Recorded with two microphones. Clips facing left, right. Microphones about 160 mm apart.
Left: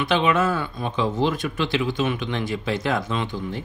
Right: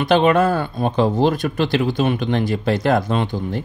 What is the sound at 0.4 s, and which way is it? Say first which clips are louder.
Speech: right 5 dB; 40° right (ahead or behind).